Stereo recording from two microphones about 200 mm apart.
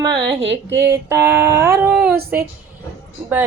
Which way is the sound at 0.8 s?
15° right (ahead or behind).